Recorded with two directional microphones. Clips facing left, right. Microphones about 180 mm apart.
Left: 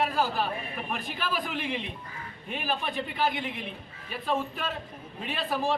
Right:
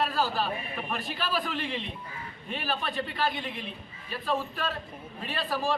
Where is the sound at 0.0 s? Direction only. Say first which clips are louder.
Left 1 dB; 15° left (ahead or behind).